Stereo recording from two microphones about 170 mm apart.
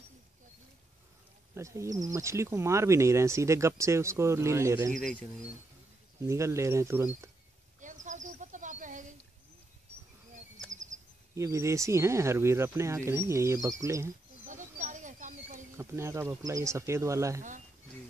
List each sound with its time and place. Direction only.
1.5 s speech: 15° right (ahead or behind)
6.2 s speech: 15° right (ahead or behind)
7.8 s snake: 45° right (ahead or behind)
10.7 s a sound: 45° right (ahead or behind)
11.3 s speech: 15° right (ahead or behind)
14.5 s a sound: 45° right (ahead or behind)
15.8 s speech: 15° right (ahead or behind)